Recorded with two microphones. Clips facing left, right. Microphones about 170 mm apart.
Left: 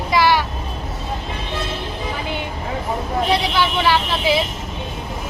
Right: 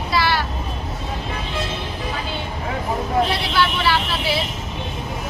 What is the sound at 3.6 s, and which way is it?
Speech, 15° left (ahead or behind).